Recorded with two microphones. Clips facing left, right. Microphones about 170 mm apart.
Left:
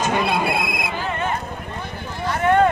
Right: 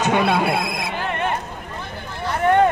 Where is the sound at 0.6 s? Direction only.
55° left (ahead or behind).